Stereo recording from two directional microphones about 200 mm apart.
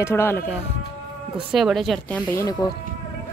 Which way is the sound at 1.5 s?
Centre (ahead or behind).